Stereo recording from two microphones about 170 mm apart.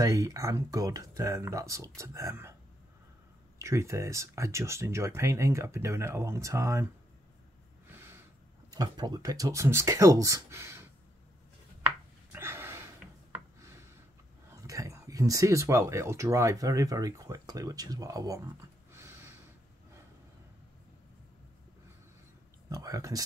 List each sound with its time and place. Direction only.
0.0 s speech: 20° right (ahead or behind)
3.5 s speech: 15° right (ahead or behind)
7.9 s a sound: 15° right (ahead or behind)
8.6 s speech: 25° right (ahead or behind)
12.3 s a sound: 15° right (ahead or behind)
14.5 s speech: 20° right (ahead or behind)
22.7 s speech: 20° right (ahead or behind)